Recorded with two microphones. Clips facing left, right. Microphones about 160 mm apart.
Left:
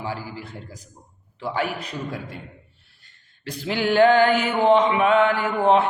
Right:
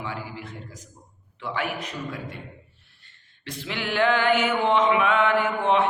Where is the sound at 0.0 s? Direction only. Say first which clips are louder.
Left 3 dB; 35° left (ahead or behind).